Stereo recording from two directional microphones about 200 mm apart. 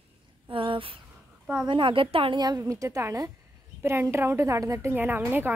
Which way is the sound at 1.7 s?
25° right (ahead or behind).